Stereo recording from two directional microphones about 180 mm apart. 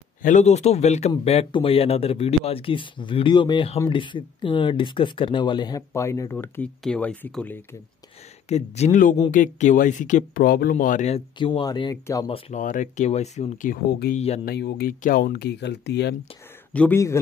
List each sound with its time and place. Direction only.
0.2 s speech: 40° left (ahead or behind); by 7.5 s 5° left (ahead or behind)
8.5 s speech: 35° left (ahead or behind); by 12.3 s 20° left (ahead or behind)
12.3 s speech: 40° left (ahead or behind)
14.1 s speech: 35° left (ahead or behind)
14.4 s speech: 65° left (ahead or behind)
16.7 s speech: 10° left (ahead or behind)